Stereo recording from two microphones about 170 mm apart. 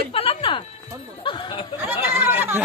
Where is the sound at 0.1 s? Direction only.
35° left (ahead or behind).